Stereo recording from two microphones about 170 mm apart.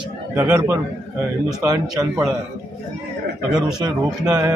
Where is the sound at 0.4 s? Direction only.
10° right (ahead or behind).